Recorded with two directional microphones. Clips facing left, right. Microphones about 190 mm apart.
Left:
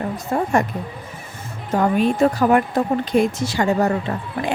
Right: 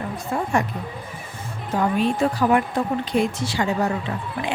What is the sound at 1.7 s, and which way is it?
Speech, 45° left (ahead or behind).